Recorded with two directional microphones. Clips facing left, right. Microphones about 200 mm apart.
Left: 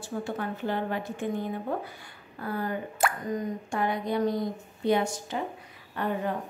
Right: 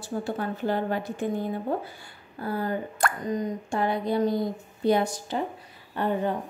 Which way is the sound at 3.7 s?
30° right (ahead or behind).